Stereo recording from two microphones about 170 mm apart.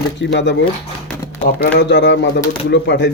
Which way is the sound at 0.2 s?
90° left.